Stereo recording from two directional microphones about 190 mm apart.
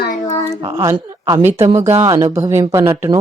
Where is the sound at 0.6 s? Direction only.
15° right (ahead or behind).